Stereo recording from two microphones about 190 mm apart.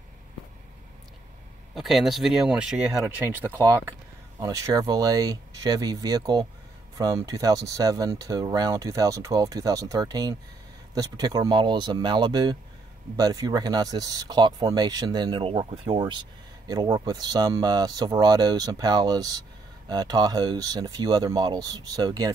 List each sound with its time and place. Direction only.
1.8 s speech: centre (ahead or behind); by 22.3 s 20° right (ahead or behind)